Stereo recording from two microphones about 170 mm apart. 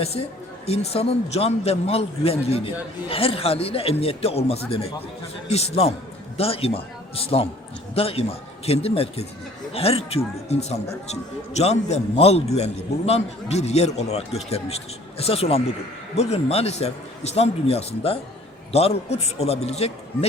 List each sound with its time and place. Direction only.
0.6 s a man's voice: 35° left (ahead or behind)